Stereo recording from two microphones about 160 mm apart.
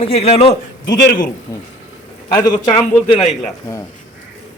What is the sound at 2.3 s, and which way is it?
Speech, 25° left (ahead or behind).